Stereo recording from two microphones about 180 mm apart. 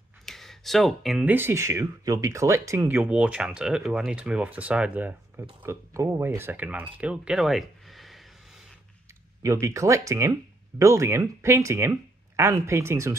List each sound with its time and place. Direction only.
0.2 s speech: centre (ahead or behind)
9.4 s speech: 15° right (ahead or behind)